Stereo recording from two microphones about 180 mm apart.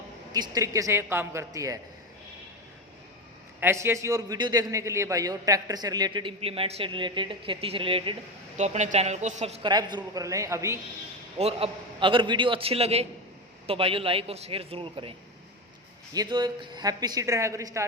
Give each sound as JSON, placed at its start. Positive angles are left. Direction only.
{"t": 0.3, "sound": "a man's voice", "side_deg": -20}
{"t": 3.6, "sound": "a man's voice", "side_deg": -15}
{"t": 9.6, "sound": "a man's voice", "side_deg": -25}
{"t": 11.3, "sound": "a man's voice", "side_deg": -35}
{"t": 16.1, "sound": "a man's voice", "side_deg": -20}